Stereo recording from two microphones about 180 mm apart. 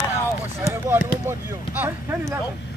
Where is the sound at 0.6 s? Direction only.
15° right (ahead or behind).